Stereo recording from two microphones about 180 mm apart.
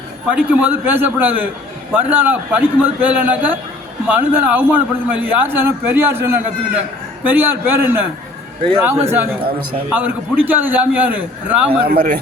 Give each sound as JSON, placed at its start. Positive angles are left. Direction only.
{"t": 0.3, "sound": "a man's voice", "side_deg": -5}
{"t": 11.9, "sound": "a man's voice", "side_deg": -55}